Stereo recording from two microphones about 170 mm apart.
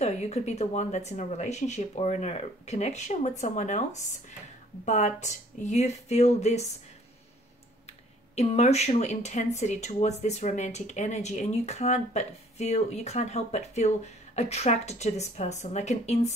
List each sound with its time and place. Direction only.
0.0 s speech: 40° left (ahead or behind)
8.4 s speech: 40° left (ahead or behind)